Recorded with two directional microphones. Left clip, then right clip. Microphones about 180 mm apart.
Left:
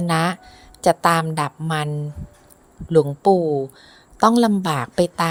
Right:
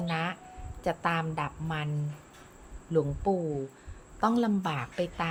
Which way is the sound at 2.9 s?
50° left (ahead or behind).